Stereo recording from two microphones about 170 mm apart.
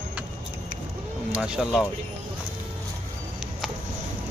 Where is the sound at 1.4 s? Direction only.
5° right (ahead or behind).